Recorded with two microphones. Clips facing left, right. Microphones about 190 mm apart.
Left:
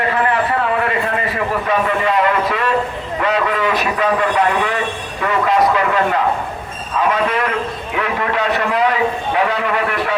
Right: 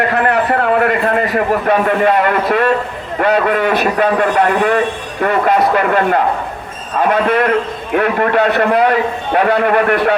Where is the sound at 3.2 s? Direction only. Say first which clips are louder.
Right 5 dB; 55° right (ahead or behind).